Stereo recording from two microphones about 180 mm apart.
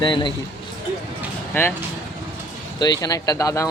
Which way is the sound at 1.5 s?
10° left (ahead or behind).